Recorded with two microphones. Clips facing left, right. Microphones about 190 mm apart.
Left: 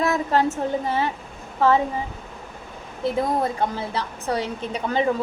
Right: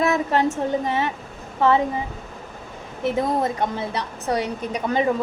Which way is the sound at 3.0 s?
20° right (ahead or behind).